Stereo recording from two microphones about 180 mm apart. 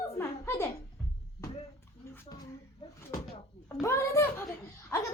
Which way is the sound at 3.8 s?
15° left (ahead or behind).